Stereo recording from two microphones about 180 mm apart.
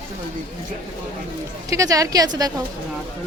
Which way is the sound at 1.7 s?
20° right (ahead or behind).